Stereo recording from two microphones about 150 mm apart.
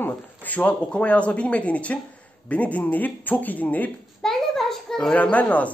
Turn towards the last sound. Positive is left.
turn(degrees=10)  # may be behind; listen again after turning